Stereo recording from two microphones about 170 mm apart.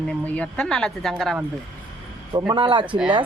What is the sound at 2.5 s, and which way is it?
Speech, 30° right (ahead or behind).